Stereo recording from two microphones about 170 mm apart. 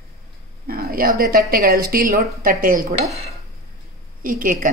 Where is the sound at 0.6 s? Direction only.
60° right (ahead or behind).